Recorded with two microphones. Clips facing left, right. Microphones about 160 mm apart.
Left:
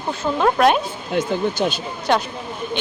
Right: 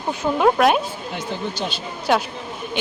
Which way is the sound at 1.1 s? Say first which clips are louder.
Left 9 dB; 50° left (ahead or behind).